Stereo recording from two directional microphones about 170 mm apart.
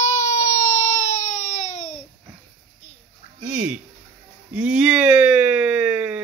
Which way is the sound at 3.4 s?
5° right (ahead or behind).